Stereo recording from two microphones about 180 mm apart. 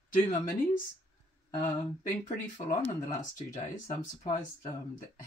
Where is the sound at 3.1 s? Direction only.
40° left (ahead or behind).